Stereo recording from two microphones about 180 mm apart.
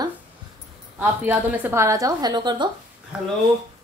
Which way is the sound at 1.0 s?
10° right (ahead or behind).